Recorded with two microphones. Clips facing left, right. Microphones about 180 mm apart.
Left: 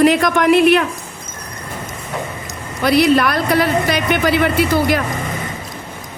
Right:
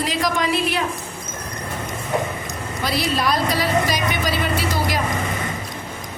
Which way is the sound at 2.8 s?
60° left (ahead or behind).